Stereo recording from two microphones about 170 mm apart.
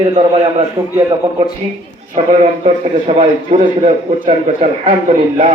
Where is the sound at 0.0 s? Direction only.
35° right (ahead or behind).